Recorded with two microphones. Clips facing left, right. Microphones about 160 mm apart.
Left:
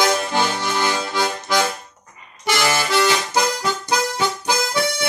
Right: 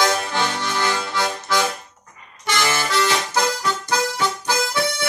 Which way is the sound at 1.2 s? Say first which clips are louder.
Left 2 dB; 15° left (ahead or behind).